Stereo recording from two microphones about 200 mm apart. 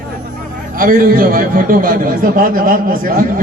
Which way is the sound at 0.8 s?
45° right (ahead or behind).